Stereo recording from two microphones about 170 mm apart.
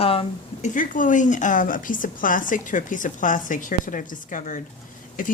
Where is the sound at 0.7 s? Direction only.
50° left (ahead or behind).